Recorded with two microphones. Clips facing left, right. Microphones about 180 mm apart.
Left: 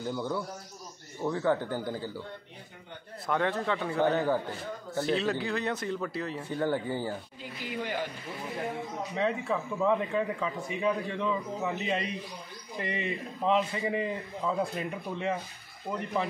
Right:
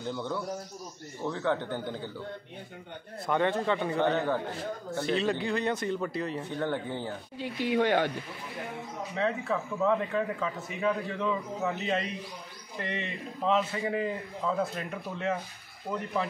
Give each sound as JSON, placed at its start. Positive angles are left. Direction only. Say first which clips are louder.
{"t": 0.0, "sound": "a man's voice", "louder": "left 1 dB", "side_deg": 10}
{"t": 3.3, "sound": "speech", "louder": "right 2 dB", "side_deg": 0}
{"t": 7.3, "sound": "speech", "louder": "right 9 dB", "side_deg": -75}
{"t": 9.1, "sound": "speech", "louder": "even", "side_deg": 5}